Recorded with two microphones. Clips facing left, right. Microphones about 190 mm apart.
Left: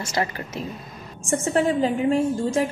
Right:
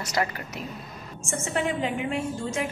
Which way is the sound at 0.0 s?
25° left (ahead or behind).